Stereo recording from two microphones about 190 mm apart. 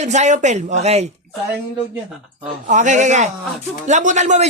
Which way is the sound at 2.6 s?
40° right (ahead or behind).